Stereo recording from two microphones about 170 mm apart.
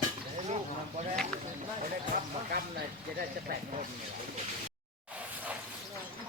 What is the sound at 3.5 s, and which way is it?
Speech, 60° right (ahead or behind).